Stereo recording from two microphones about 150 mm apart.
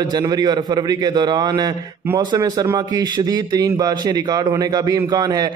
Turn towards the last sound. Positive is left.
turn(degrees=-25)  # may be behind; listen again after turning